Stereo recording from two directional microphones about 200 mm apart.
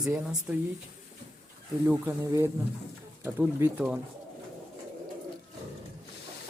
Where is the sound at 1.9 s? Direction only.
15° right (ahead or behind).